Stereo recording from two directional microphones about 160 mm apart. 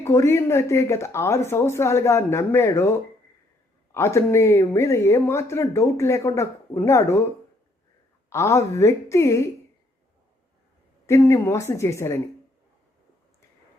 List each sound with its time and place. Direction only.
0.0 s speech: 15° left (ahead or behind)
3.9 s speech: 15° left (ahead or behind)
8.3 s a woman's voice: 20° left (ahead or behind)
11.0 s speech: 20° left (ahead or behind)